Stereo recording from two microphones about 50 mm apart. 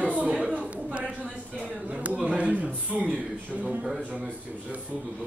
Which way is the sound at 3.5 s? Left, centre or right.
Centre.